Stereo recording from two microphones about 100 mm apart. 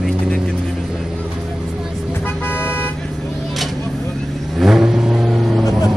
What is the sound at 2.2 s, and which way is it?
Vehicle, 20° left (ahead or behind).